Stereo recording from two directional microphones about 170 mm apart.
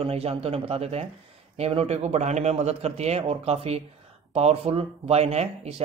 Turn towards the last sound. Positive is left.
turn(degrees=-40)  # may be behind; listen again after turning